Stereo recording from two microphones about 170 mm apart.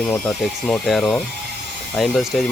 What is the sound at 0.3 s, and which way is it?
Speech, centre (ahead or behind).